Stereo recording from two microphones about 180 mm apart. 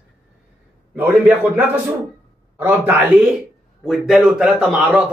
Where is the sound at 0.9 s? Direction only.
10° right (ahead or behind).